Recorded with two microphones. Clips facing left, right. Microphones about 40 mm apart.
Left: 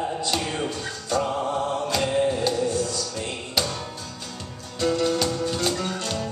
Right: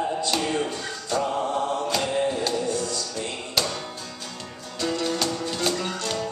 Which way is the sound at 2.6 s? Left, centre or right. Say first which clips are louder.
Left 2 dB; left.